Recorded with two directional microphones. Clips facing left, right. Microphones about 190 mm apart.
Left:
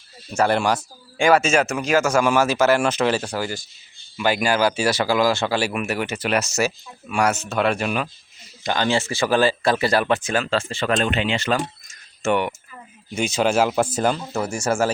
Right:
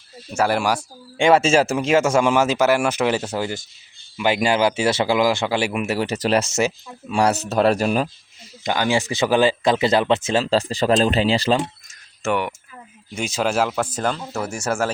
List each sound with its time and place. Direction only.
0.3 s speech: 5° right (ahead or behind)
0.8 s speech: 25° right (ahead or behind)
8.6 s speech: 10° right (ahead or behind); by 11.6 s 30° right (ahead or behind)
12.2 s speech: centre (ahead or behind)